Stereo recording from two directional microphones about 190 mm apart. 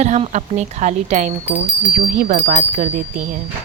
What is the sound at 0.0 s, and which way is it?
A woman's voice, 35° right (ahead or behind).